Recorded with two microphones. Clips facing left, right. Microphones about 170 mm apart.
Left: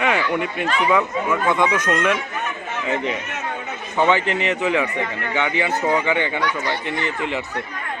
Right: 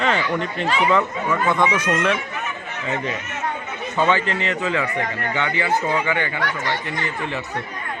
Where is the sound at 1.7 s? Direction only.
10° right (ahead or behind).